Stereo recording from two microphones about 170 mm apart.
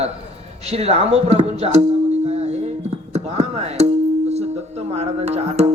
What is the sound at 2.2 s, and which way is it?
Music, 40° right (ahead or behind).